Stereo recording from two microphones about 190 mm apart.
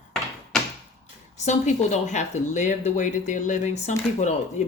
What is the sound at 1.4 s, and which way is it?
Speech, 40° left (ahead or behind).